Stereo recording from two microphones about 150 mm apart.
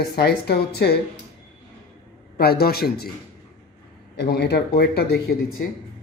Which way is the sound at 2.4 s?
90° left.